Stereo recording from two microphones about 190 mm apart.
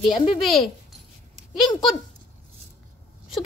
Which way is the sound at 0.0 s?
30° left (ahead or behind).